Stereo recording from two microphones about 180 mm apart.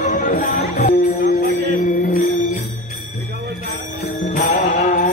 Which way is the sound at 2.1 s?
50° left (ahead or behind).